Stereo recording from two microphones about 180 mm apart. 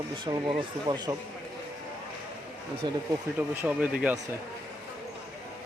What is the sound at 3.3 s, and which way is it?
Speech, 10° right (ahead or behind).